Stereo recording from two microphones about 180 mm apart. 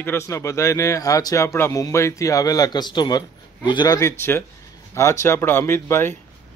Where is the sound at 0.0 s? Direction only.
15° left (ahead or behind).